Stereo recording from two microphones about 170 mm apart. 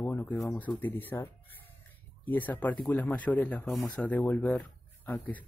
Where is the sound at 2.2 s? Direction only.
10° left (ahead or behind).